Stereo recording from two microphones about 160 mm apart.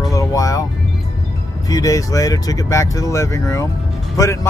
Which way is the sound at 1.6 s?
20° left (ahead or behind).